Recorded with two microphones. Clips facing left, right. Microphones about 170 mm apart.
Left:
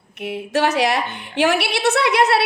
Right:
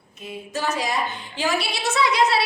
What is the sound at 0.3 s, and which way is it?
A woman's voice, 75° left (ahead or behind).